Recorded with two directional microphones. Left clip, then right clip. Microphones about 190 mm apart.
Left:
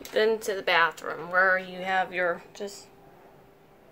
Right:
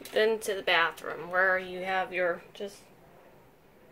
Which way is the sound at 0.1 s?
5° left (ahead or behind).